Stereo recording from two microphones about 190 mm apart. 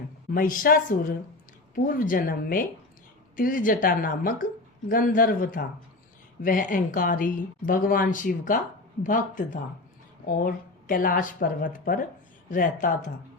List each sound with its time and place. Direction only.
0.3 s speech: 50° left (ahead or behind)